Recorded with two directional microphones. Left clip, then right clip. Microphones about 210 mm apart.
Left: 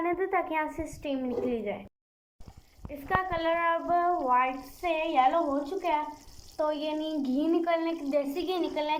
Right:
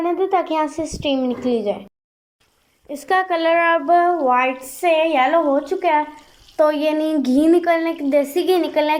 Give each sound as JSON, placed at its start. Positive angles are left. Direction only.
{"t": 0.0, "sound": "a woman's voice", "side_deg": -30}
{"t": 3.1, "sound": "speech", "side_deg": -40}